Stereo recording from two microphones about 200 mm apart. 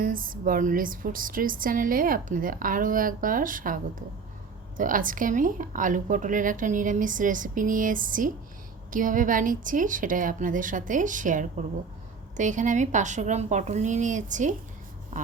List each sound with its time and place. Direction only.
0.0 s a woman's voice: 45° right (ahead or behind)